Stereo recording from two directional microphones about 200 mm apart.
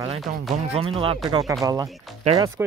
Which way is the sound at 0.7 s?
30° right (ahead or behind).